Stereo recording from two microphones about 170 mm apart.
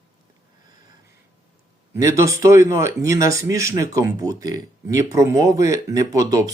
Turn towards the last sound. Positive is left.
turn(degrees=-20)  # may be behind; listen again after turning